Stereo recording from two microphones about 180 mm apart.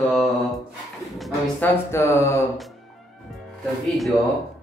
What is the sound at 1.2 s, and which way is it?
Speech, 10° left (ahead or behind).